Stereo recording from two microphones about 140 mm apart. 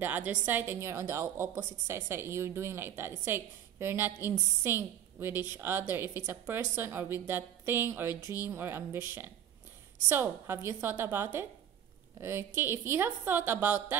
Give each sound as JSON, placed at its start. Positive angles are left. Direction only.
{"t": 0.0, "sound": "a woman's voice", "side_deg": -10}